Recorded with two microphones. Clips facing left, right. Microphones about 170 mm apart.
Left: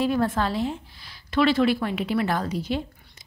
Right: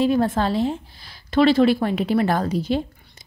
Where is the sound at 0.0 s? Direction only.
25° right (ahead or behind).